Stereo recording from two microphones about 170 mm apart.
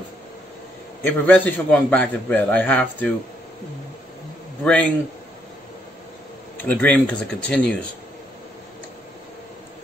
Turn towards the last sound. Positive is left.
turn(degrees=5)  # may be behind; listen again after turning